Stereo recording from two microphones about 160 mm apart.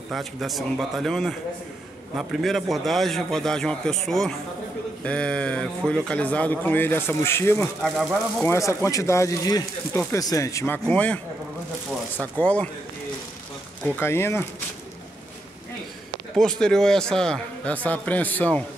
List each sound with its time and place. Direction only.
0.1 s a man's voice: centre (ahead or behind)
7.8 s a man's voice: 5° left (ahead or behind)
8.5 s speech: 20° left (ahead or behind)
12.2 s a man's voice: 10° left (ahead or behind)
13.9 s a man's voice: 15° left (ahead or behind)
16.3 s a man's voice: 5° left (ahead or behind)